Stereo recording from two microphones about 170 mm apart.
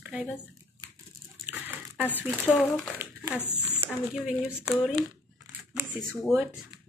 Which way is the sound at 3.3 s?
10° left (ahead or behind).